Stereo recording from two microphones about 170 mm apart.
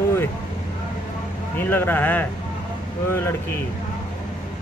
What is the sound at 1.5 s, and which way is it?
Speech, 10° left (ahead or behind).